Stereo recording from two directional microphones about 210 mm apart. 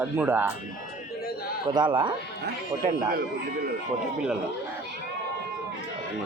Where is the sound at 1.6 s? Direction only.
20° right (ahead or behind).